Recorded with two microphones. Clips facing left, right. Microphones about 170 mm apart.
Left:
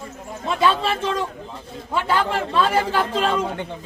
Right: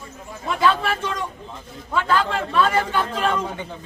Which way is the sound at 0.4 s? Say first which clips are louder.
Left 1 dB; 20° left (ahead or behind).